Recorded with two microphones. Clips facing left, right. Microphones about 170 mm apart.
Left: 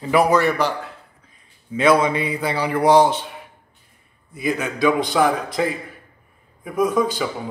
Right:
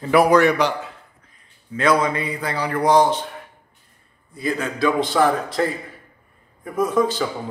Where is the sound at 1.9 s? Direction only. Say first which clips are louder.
Left 2 dB; 20° left (ahead or behind).